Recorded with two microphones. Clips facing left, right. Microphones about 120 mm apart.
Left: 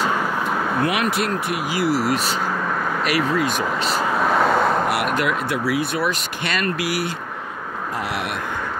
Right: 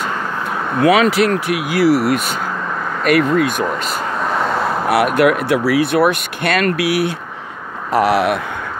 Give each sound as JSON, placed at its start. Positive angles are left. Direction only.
{"t": 0.8, "sound": "speech", "side_deg": -90}
{"t": 1.7, "sound": "speech", "side_deg": -60}
{"t": 4.1, "sound": "vehicle", "side_deg": 0}
{"t": 5.0, "sound": "speech", "side_deg": -55}
{"t": 7.9, "sound": "speech", "side_deg": -75}